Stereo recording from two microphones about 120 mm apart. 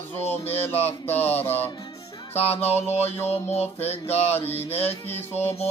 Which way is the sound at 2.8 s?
60° left (ahead or behind).